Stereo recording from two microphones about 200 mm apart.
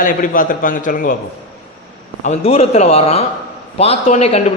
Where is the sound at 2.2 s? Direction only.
35° left (ahead or behind).